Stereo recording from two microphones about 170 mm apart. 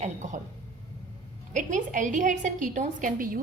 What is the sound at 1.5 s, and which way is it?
A woman's voice, 45° right (ahead or behind).